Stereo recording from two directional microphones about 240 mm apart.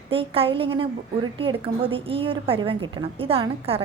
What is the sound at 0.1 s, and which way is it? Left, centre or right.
A woman's voice, right.